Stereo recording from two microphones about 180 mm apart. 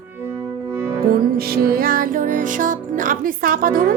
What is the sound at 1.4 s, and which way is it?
Speech, 55° right (ahead or behind).